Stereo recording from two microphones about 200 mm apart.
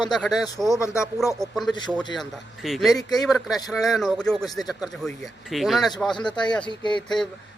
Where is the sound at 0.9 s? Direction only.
5° right (ahead or behind).